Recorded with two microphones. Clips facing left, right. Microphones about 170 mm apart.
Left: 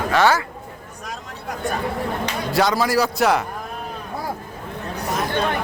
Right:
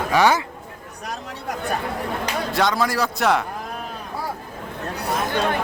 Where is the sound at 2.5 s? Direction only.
Centre (ahead or behind).